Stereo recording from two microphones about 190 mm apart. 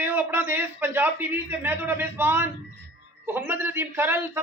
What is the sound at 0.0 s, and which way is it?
A man's voice, 10° right (ahead or behind).